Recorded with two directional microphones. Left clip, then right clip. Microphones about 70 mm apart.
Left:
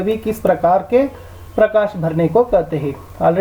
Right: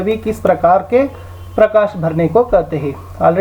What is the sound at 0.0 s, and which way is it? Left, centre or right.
Speech, centre.